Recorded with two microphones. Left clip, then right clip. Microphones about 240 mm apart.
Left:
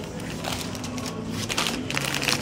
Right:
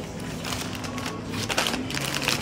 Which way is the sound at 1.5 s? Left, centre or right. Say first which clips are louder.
Right 1 dB; centre.